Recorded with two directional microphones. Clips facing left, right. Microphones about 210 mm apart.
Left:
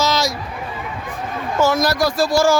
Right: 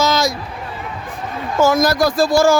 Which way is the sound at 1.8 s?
50° right (ahead or behind).